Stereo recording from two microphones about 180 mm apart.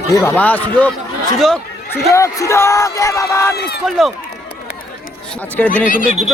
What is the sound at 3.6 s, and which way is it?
Speech, 65° left (ahead or behind).